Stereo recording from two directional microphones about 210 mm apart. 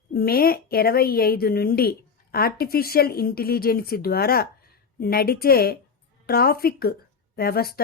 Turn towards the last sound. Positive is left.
turn(degrees=45)  # may be behind; listen again after turning